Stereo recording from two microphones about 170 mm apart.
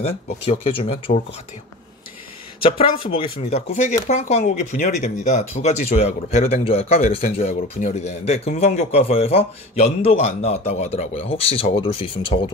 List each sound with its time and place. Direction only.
0.5 s speech: 35° left (ahead or behind)
2.6 s speech: 30° left (ahead or behind)